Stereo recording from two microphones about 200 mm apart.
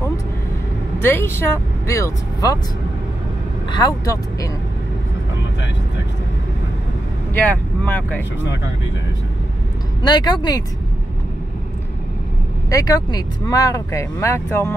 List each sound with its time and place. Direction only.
1.0 s speech: 10° left (ahead or behind)
3.7 s speech: 20° left (ahead or behind)
7.3 s speech: 10° left (ahead or behind)
10.0 s speech: 20° left (ahead or behind)
12.6 s speech: 15° left (ahead or behind)